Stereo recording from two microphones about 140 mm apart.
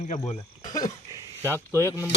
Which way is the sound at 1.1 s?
20° right (ahead or behind).